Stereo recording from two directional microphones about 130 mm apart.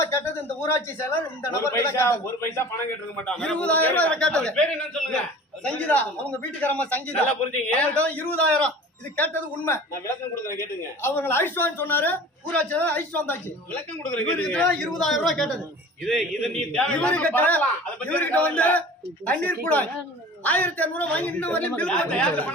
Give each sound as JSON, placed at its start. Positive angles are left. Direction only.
{"t": 0.6, "sound": "a man's voice", "side_deg": 20}
{"t": 3.2, "sound": "a man's voice", "side_deg": 5}